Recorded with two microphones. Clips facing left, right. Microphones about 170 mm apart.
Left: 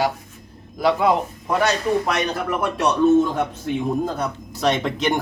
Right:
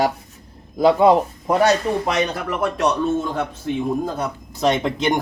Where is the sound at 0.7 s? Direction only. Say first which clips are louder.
Right 5 dB; 30° right (ahead or behind).